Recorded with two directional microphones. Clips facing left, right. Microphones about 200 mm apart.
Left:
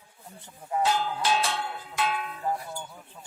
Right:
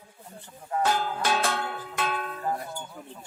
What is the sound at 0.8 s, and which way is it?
Music, 50° right (ahead or behind).